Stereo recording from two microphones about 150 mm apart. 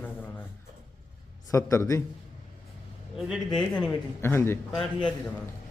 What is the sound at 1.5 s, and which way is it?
Speech, 20° left (ahead or behind).